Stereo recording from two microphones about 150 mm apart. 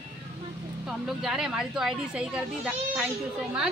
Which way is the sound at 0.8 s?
5° right (ahead or behind).